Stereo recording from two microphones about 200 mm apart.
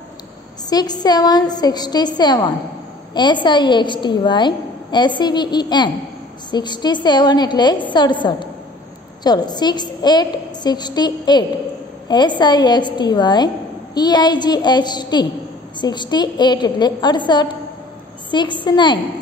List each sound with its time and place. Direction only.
0.7 s a woman's voice: 20° left (ahead or behind)